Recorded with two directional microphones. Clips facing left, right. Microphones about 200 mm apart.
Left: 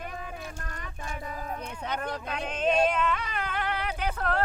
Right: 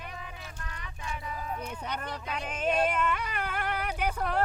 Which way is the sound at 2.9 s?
10° right (ahead or behind).